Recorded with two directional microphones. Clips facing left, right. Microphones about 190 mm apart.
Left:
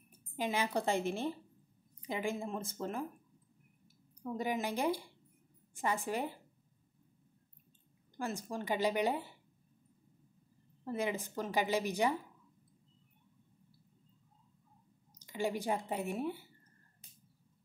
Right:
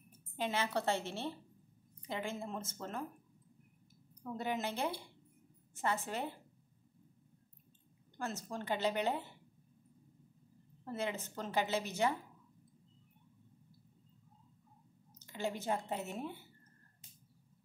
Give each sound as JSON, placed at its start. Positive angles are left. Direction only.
{"t": 0.4, "sound": "a woman's voice", "side_deg": 10}
{"t": 4.2, "sound": "a woman's voice", "side_deg": 10}
{"t": 8.2, "sound": "a woman's voice", "side_deg": 10}
{"t": 10.8, "sound": "a woman's voice", "side_deg": 10}
{"t": 15.1, "sound": "speech", "side_deg": 15}